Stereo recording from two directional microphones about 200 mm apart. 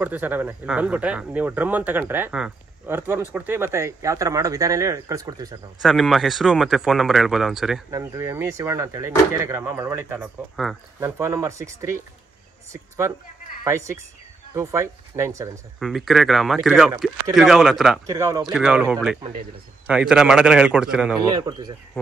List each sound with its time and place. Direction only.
0.0 s speech: 10° right (ahead or behind)
5.8 s speech: centre (ahead or behind)
7.9 s speech: 15° right (ahead or behind)
11.0 s speech: 10° right (ahead or behind)
15.8 s speech: centre (ahead or behind)
18.0 s speech: 15° right (ahead or behind)
18.4 s speech: 5° right (ahead or behind)
21.3 s speech: 20° right (ahead or behind)